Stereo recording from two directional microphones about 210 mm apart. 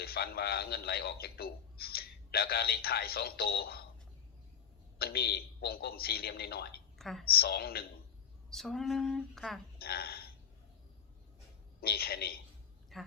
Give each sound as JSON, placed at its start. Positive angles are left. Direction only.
{"t": 0.0, "sound": "a man's voice", "side_deg": 50}
{"t": 4.9, "sound": "a man's voice", "side_deg": 50}
{"t": 7.0, "sound": "a woman's voice", "side_deg": 0}
{"t": 7.3, "sound": "a man's voice", "side_deg": 50}
{"t": 8.4, "sound": "speech", "side_deg": 0}
{"t": 9.7, "sound": "speech", "side_deg": 45}
{"t": 11.8, "sound": "a man's voice", "side_deg": 45}
{"t": 12.9, "sound": "speech", "side_deg": 0}